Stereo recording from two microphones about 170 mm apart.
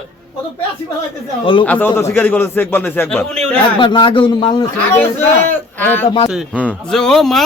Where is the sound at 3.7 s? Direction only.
30° left (ahead or behind).